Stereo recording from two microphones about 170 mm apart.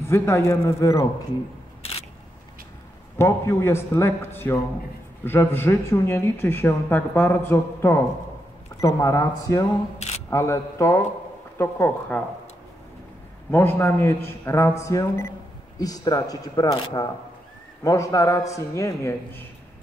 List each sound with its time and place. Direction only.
0.0 s speech: 15° left (ahead or behind)
3.2 s speech: 15° left (ahead or behind)
9.9 s single-lens reflex camera: 40° left (ahead or behind)
10.3 s speech: 15° left (ahead or behind)
13.5 s speech: 15° left (ahead or behind)